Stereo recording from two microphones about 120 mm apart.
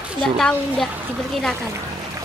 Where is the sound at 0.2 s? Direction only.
5° left (ahead or behind).